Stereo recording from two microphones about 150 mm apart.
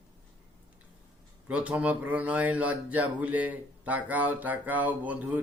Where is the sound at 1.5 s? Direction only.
10° right (ahead or behind).